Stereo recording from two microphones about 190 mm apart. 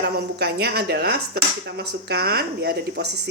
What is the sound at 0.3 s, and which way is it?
Speech, 60° right (ahead or behind).